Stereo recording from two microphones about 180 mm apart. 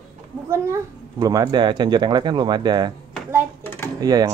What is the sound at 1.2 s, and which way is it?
Speech, 20° right (ahead or behind).